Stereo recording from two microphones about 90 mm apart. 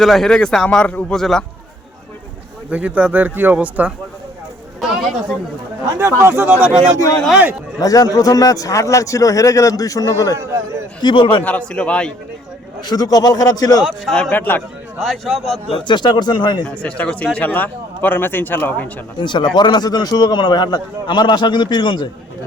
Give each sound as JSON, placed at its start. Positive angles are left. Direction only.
{"t": 0.0, "sound": "a man's voice", "side_deg": 5}
{"t": 2.6, "sound": "speech", "side_deg": -15}
{"t": 4.8, "sound": "a man's voice", "side_deg": 0}
{"t": 6.0, "sound": "speech", "side_deg": -30}
{"t": 7.8, "sound": "speech", "side_deg": 40}
{"t": 11.0, "sound": "a man's voice", "side_deg": 65}
{"t": 11.4, "sound": "a man's voice", "side_deg": 15}
{"t": 12.8, "sound": "a man's voice", "side_deg": 45}
{"t": 13.8, "sound": "a man's voice", "side_deg": 0}
{"t": 14.2, "sound": "speech", "side_deg": 15}
{"t": 14.9, "sound": "a man's voice", "side_deg": 0}
{"t": 15.7, "sound": "a man's voice", "side_deg": 60}
{"t": 16.6, "sound": "a man's voice", "side_deg": 10}
{"t": 19.2, "sound": "a man's voice", "side_deg": 60}